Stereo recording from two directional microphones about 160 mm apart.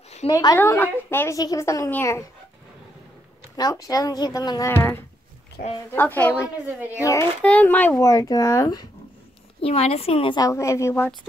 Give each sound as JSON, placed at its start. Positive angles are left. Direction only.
{"t": 0.3, "sound": "a woman's voice", "side_deg": 25}
{"t": 0.6, "sound": "a child's voice", "side_deg": 15}
{"t": 3.5, "sound": "a woman's voice", "side_deg": 25}
{"t": 7.4, "sound": "a child's voice", "side_deg": 10}
{"t": 9.6, "sound": "a woman's voice", "side_deg": 40}